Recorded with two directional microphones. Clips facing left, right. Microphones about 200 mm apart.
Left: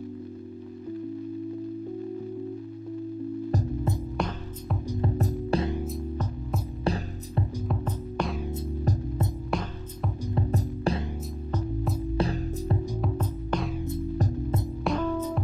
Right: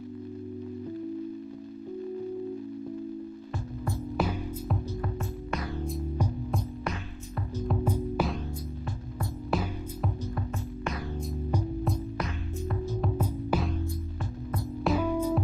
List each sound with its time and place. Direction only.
4.2 s music: 5° right (ahead or behind)
5.2 s music: 30° left (ahead or behind)
6.8 s music: 30° left (ahead or behind)
7.6 s music: 5° right (ahead or behind)
9.5 s music: centre (ahead or behind)
10.5 s music: 30° left (ahead or behind)
12.2 s music: 30° left (ahead or behind)
13.2 s music: 5° right (ahead or behind)
14.9 s music: 10° right (ahead or behind)